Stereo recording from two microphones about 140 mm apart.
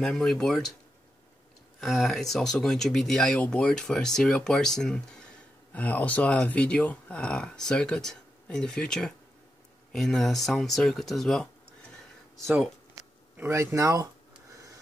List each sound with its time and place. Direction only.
0.0 s speech: 5° left (ahead or behind)
1.8 s speech: centre (ahead or behind)
13.4 s speech: 20° right (ahead or behind)